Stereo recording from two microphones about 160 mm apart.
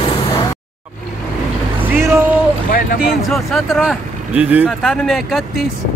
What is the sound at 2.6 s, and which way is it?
Speech, 65° left (ahead or behind).